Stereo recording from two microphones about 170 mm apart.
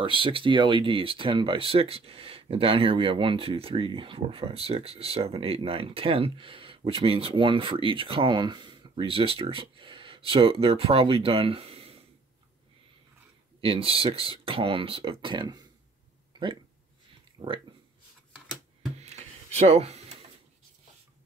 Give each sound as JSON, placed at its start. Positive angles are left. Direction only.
{"t": 0.0, "sound": "speech", "side_deg": -30}
{"t": 13.6, "sound": "speech", "side_deg": -35}
{"t": 17.4, "sound": "speech", "side_deg": -30}
{"t": 18.9, "sound": "a sound", "side_deg": -40}